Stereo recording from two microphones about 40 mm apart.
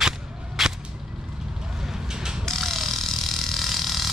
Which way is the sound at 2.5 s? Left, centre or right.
Centre.